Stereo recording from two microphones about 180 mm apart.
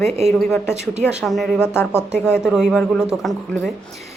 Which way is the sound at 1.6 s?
10° left (ahead or behind).